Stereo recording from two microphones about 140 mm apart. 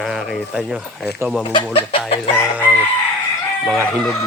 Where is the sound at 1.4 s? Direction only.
35° left (ahead or behind).